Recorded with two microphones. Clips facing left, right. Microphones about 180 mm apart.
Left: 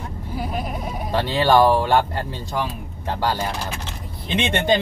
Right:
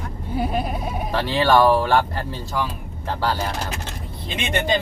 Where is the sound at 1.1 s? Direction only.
20° left (ahead or behind).